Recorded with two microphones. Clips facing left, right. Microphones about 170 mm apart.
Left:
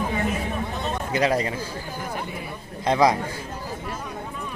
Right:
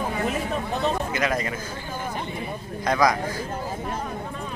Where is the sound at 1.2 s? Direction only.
30° left (ahead or behind).